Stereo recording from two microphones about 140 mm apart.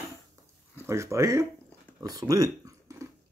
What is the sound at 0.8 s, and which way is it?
Speech, 20° right (ahead or behind).